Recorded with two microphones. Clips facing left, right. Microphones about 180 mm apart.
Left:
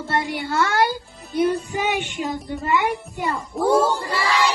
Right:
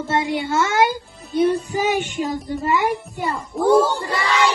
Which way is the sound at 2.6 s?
40° right (ahead or behind).